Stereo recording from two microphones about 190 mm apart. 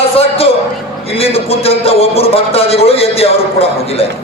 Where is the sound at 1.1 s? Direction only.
30° left (ahead or behind).